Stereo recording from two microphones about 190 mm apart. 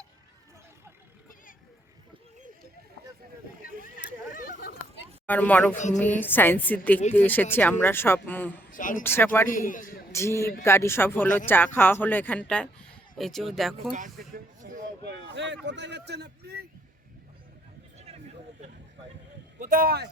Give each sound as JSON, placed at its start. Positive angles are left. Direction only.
{"t": 5.2, "sound": "speech", "side_deg": 10}
{"t": 5.7, "sound": "a woman's voice", "side_deg": 40}
{"t": 6.1, "sound": "speech", "side_deg": 10}
{"t": 8.7, "sound": "speech", "side_deg": 45}
{"t": 9.0, "sound": "speech", "side_deg": 10}
{"t": 9.5, "sound": "a man's voice", "side_deg": 45}
{"t": 10.1, "sound": "speech", "side_deg": 15}
{"t": 13.9, "sound": "speech", "side_deg": -45}
{"t": 15.0, "sound": "a sound", "side_deg": -65}
{"t": 15.6, "sound": "speech", "side_deg": -65}
{"t": 19.5, "sound": "speech", "side_deg": -45}